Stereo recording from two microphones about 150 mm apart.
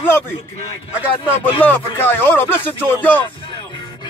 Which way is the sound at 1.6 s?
10° left (ahead or behind).